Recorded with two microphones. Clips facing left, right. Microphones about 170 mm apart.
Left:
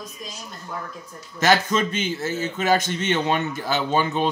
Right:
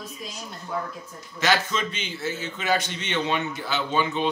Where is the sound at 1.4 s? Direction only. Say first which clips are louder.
Left 5 dB; 45° left (ahead or behind).